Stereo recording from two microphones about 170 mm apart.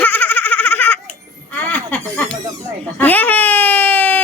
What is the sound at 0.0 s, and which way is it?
Baby laughter, 10° left (ahead or behind).